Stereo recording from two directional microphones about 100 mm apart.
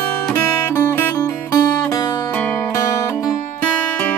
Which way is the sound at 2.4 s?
25° left (ahead or behind).